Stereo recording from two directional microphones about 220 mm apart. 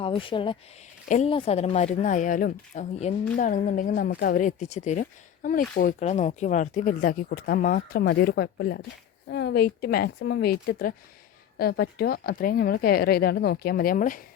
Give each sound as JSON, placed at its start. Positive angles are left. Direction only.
{"t": 0.0, "sound": "a woman's voice", "side_deg": 25}